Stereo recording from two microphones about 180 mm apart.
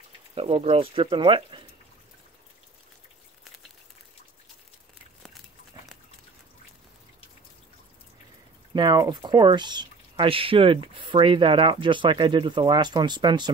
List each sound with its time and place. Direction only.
0.3 s speech: 35° right (ahead or behind)
8.7 s speech: 25° right (ahead or behind)